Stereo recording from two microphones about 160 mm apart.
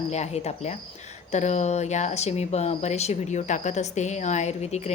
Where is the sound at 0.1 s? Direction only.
45° left (ahead or behind).